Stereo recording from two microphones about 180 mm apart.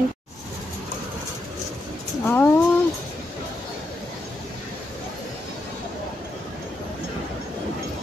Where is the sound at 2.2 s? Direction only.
10° left (ahead or behind).